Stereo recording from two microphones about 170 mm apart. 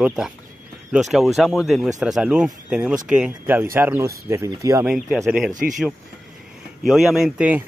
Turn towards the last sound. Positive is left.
turn(degrees=-10)  # may be behind; listen again after turning